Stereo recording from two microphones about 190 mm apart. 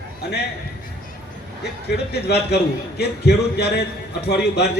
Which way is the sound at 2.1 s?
60° left (ahead or behind).